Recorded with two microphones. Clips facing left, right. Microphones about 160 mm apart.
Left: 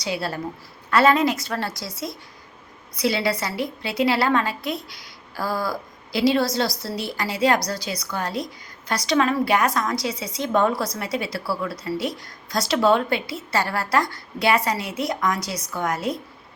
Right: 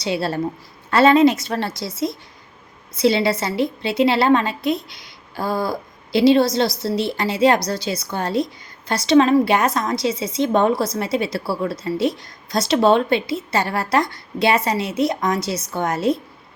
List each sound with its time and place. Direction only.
0.0 s a woman's voice: 25° right (ahead or behind)